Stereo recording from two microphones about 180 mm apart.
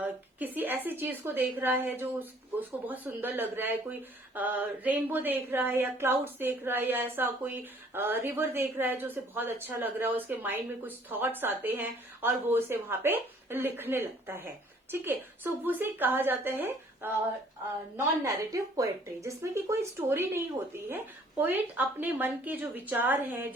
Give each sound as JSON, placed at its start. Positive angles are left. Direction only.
{"t": 0.0, "sound": "a woman's voice", "side_deg": -10}